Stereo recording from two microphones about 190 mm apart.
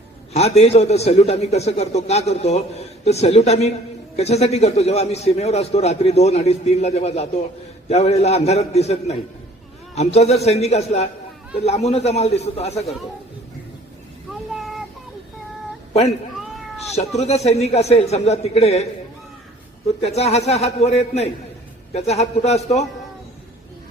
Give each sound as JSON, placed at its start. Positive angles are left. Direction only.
{"t": 0.3, "sound": "a man's voice", "side_deg": 35}
{"t": 15.9, "sound": "speech", "side_deg": 35}
{"t": 17.2, "sound": "a man's voice", "side_deg": 35}
{"t": 20.0, "sound": "a man's voice", "side_deg": 35}